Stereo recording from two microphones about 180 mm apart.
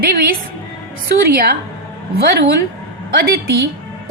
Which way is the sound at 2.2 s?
65° right (ahead or behind).